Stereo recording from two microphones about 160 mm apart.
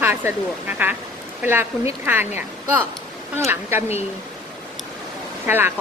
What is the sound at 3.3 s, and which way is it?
Speech, 15° right (ahead or behind).